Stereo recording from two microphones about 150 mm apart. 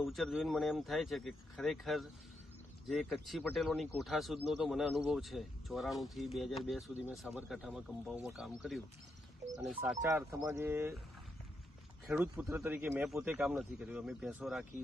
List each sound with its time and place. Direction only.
0.0 s speech: centre (ahead or behind)
10.0 s speech: 15° right (ahead or behind)
12.0 s speech: 10° right (ahead or behind)